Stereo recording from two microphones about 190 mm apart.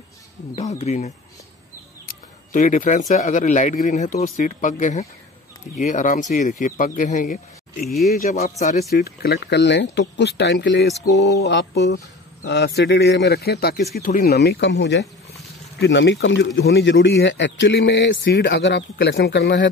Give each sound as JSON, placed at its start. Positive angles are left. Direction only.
{"t": 0.6, "sound": "speech", "side_deg": 35}
{"t": 2.5, "sound": "speech", "side_deg": 45}
{"t": 7.8, "sound": "speech", "side_deg": 0}
{"t": 8.1, "sound": "speech", "side_deg": 40}
{"t": 8.9, "sound": "speech", "side_deg": 55}